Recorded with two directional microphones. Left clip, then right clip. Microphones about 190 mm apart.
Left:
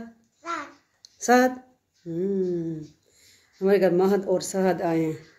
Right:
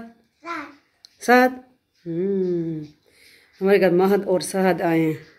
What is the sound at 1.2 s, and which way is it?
Speech, 10° right (ahead or behind).